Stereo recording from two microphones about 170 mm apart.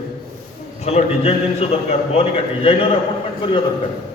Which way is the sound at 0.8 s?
40° left (ahead or behind).